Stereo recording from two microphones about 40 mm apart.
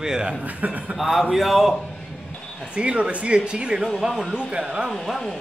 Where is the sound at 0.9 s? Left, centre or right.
Centre.